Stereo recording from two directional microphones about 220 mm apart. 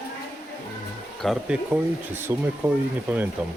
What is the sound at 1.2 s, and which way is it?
Speech, 5° right (ahead or behind).